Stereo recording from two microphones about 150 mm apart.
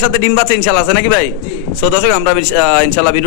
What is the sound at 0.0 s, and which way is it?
A man's voice, 15° left (ahead or behind).